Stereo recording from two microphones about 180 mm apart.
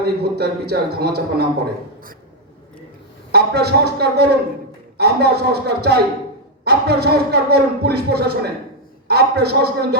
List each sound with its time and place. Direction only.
0.0 s speech: 65° right (ahead or behind)
3.3 s speech: 65° right (ahead or behind)